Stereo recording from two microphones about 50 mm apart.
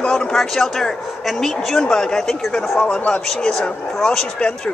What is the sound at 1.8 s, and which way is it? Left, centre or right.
Speech, centre.